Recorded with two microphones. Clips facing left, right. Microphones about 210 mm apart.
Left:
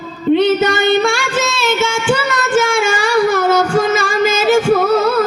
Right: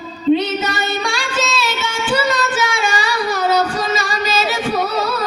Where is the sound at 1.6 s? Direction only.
50° left (ahead or behind).